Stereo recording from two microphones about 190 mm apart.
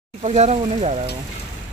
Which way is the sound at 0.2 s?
35° right (ahead or behind).